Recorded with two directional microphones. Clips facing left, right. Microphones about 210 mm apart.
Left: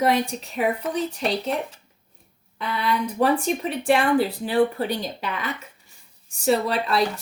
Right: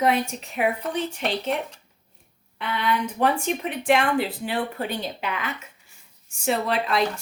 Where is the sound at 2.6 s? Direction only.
35° left (ahead or behind).